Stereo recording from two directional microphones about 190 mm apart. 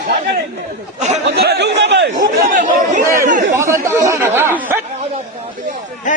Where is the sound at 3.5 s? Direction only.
15° right (ahead or behind).